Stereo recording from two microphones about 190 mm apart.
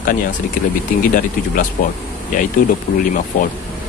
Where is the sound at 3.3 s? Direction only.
45° left (ahead or behind).